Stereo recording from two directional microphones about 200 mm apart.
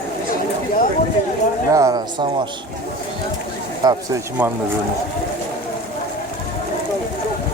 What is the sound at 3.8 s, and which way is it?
Speech, 20° right (ahead or behind).